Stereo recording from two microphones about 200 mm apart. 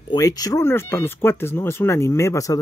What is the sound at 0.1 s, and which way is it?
Speech, 15° left (ahead or behind).